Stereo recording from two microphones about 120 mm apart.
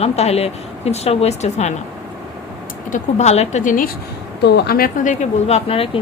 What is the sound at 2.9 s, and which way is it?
Speech, 70° left (ahead or behind).